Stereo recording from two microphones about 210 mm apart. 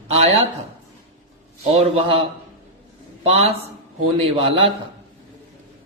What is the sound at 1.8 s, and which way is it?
Speech, 25° right (ahead or behind).